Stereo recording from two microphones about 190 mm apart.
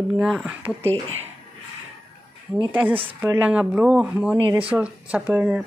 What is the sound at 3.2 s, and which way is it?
Speech, 5° right (ahead or behind).